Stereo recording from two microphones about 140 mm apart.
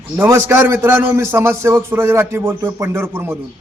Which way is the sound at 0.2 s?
20° right (ahead or behind).